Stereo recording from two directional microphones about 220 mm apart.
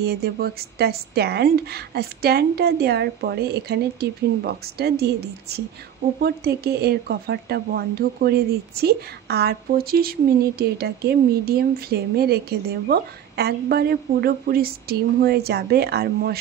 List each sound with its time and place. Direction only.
0.0 s speech: 45° right (ahead or behind)